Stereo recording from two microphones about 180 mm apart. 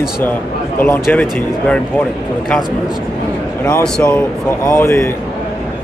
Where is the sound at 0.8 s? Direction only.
10° left (ahead or behind).